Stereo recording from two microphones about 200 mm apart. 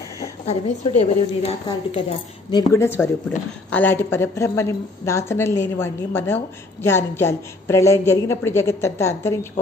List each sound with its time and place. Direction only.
0.5 s a woman's voice: 30° left (ahead or behind)
2.7 s speech: 15° left (ahead or behind)